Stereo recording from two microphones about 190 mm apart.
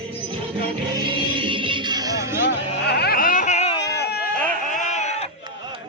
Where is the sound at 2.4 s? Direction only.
60° left (ahead or behind); by 3.8 s 35° left (ahead or behind).